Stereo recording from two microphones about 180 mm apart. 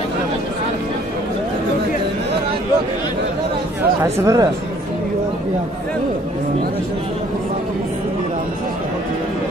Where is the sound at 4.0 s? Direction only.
15° right (ahead or behind).